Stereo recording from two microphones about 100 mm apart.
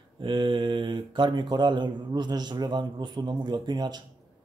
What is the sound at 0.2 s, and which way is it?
A man's voice, 55° right (ahead or behind).